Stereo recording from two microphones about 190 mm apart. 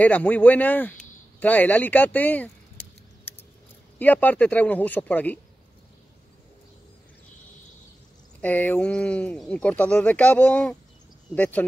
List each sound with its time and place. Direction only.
0.0 s speech: 10° left (ahead or behind)
4.0 s speech: 10° left (ahead or behind)
8.4 s speech: 10° left (ahead or behind)